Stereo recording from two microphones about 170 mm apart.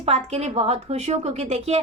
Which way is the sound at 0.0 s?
40° right (ahead or behind).